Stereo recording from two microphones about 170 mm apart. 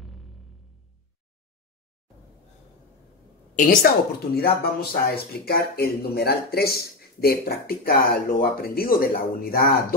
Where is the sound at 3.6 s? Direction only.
55° left (ahead or behind).